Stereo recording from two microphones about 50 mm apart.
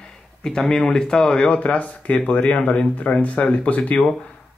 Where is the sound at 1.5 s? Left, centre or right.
Left.